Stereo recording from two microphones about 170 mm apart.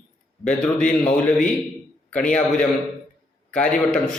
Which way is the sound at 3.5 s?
5° left (ahead or behind).